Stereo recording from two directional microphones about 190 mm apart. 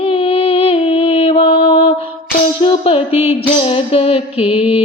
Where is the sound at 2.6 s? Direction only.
30° left (ahead or behind).